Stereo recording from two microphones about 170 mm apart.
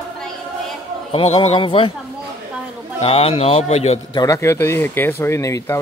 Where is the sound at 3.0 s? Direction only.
35° left (ahead or behind).